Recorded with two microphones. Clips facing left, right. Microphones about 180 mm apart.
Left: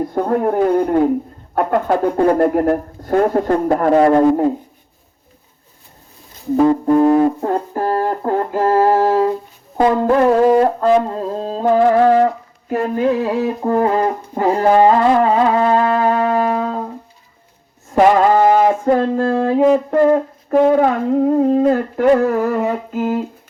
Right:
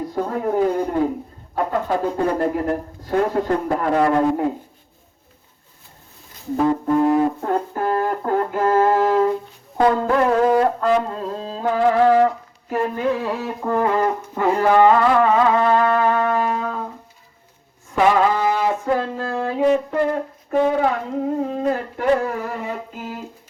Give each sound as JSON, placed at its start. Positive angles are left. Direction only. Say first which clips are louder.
{"t": 0.1, "sound": "a man's voice", "louder": "left 3 dB", "side_deg": 60}
{"t": 2.2, "sound": "a man's voice", "louder": "left 10 dB", "side_deg": 55}
{"t": 6.8, "sound": "music", "louder": "left 5 dB", "side_deg": 35}
{"t": 9.7, "sound": "music", "louder": "left 4 dB", "side_deg": 20}
{"t": 17.9, "sound": "a sound", "louder": "left 5 dB", "side_deg": 40}
{"t": 21.2, "sound": "a man's voice", "louder": "left 7 dB", "side_deg": 50}